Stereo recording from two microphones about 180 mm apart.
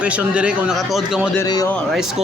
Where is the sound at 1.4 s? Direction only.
20° left (ahead or behind).